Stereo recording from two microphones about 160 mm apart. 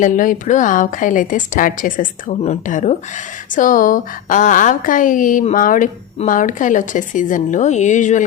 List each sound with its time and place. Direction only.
0.0 s a woman's voice: 55° left (ahead or behind)